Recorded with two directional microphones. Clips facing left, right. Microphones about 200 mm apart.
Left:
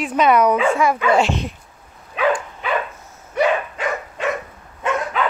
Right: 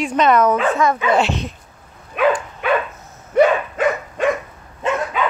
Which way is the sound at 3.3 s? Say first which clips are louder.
Right 5 dB; 50° right (ahead or behind).